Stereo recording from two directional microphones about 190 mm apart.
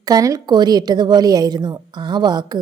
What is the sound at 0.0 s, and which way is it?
A woman's voice, 20° right (ahead or behind).